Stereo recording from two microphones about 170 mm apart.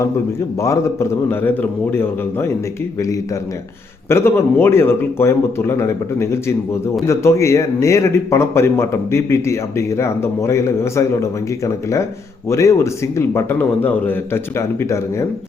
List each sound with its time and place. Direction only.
0.6 s a man's voice: 15° left (ahead or behind)
4.1 s a man's voice: 15° left (ahead or behind)